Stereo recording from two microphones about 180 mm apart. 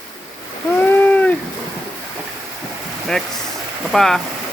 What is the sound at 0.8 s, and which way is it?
Rowboat, 10° left (ahead or behind).